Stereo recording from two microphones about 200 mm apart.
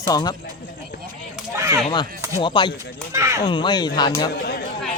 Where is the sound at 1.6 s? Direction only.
15° right (ahead or behind).